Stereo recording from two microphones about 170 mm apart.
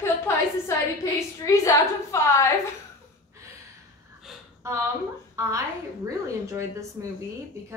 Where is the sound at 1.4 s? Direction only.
20° left (ahead or behind).